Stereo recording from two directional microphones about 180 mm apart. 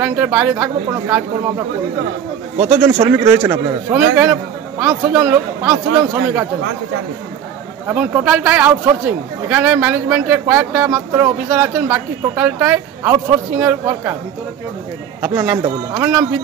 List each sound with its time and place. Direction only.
0.0 s speech: 10° right (ahead or behind)
2.5 s speech: 35° right (ahead or behind)
3.1 s speech: 15° right (ahead or behind)
7.9 s speech: 5° right (ahead or behind)
15.2 s speech: 10° right (ahead or behind)